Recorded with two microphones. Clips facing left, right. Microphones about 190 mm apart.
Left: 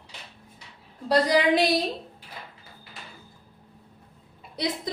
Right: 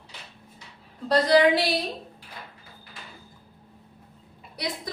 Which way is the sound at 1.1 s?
15° left (ahead or behind).